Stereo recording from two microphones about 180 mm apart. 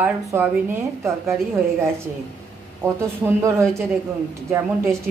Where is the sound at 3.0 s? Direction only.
15° right (ahead or behind).